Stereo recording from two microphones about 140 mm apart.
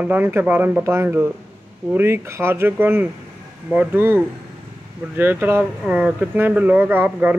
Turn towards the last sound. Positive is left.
turn(degrees=-15)  # may be behind; listen again after turning